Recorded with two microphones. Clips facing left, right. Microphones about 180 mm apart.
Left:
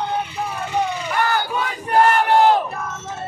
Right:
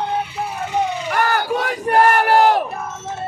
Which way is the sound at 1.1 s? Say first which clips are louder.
Right 2 dB; 65° right (ahead or behind).